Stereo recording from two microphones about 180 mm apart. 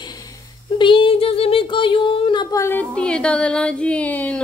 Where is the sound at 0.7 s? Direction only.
30° left (ahead or behind).